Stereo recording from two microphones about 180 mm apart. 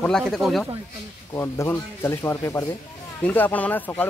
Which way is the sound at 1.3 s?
15° left (ahead or behind).